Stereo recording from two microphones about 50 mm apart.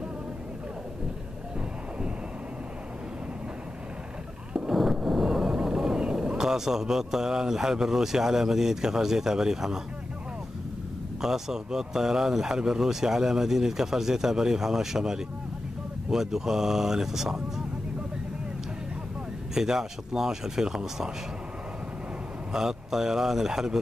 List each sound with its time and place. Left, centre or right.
4.6 s speech: centre
11.1 s speech: centre
19.5 s speech: centre
22.5 s speech: centre